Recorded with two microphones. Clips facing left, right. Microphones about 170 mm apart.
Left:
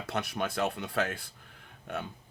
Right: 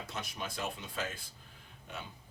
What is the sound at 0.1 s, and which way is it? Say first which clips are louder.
Speech: left 12 dB; 65° left (ahead or behind).